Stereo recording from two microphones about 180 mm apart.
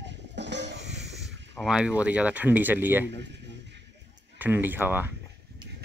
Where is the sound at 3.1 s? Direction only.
75° right (ahead or behind).